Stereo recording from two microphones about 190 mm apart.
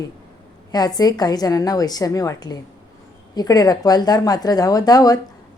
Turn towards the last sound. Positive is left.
turn(degrees=20)  # may be behind; listen again after turning